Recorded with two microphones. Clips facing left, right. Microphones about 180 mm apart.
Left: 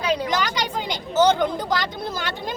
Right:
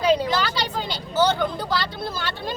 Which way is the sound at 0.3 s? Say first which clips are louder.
Even; 15° left (ahead or behind).